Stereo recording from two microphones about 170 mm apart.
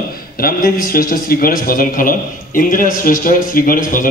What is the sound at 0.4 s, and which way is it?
A man's voice, 60° left (ahead or behind).